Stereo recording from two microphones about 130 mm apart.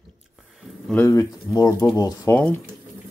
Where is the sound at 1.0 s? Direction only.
25° left (ahead or behind).